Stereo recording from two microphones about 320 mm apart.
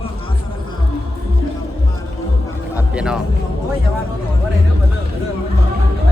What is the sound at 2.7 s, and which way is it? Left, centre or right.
Music, centre.